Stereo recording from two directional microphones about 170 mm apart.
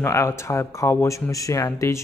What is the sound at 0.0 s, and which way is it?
Speech, 15° left (ahead or behind).